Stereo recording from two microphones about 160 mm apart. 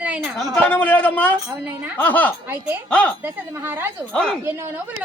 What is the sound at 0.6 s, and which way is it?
A man's voice, 10° left (ahead or behind).